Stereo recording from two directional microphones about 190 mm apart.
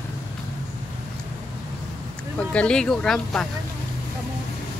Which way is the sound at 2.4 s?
5° left (ahead or behind).